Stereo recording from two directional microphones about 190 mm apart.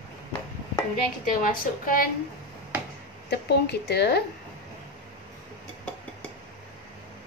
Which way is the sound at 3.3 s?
60° left (ahead or behind).